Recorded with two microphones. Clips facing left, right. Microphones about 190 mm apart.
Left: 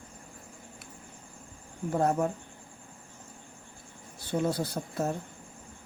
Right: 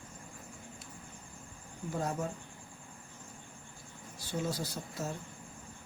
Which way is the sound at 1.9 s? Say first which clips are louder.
Left 9 dB; 60° left (ahead or behind).